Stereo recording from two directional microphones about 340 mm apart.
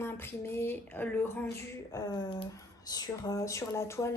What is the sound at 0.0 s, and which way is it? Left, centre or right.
A woman's voice, centre.